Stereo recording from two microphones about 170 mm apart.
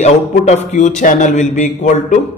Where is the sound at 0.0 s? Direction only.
45° left (ahead or behind).